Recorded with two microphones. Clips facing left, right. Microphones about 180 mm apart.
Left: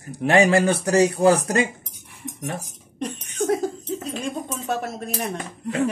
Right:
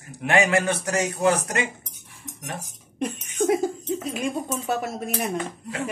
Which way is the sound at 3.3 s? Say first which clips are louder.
Right 1 dB; 10° right (ahead or behind).